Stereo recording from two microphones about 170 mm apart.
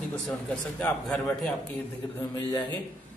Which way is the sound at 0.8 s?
5° left (ahead or behind).